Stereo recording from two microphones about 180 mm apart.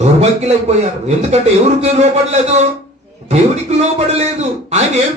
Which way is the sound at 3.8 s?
35° right (ahead or behind).